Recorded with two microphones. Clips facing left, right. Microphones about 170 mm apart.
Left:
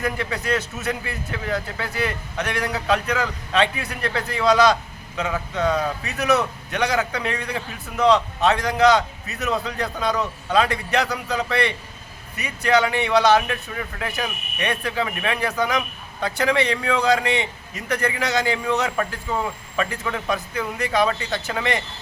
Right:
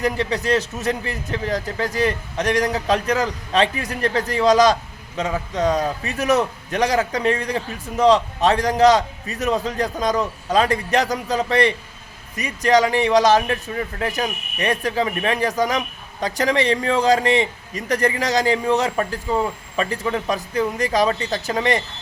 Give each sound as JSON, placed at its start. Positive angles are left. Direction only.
{"t": 0.0, "sound": "a man's voice", "side_deg": -30}